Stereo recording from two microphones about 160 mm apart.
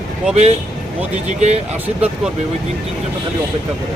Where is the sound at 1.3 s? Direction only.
45° right (ahead or behind).